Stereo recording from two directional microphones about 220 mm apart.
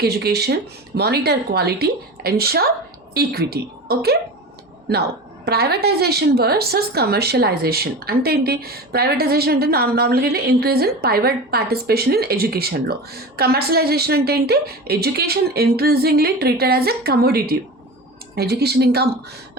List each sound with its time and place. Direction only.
0.0 s a woman's voice: 45° right (ahead or behind)
5.5 s a woman's voice: 45° right (ahead or behind)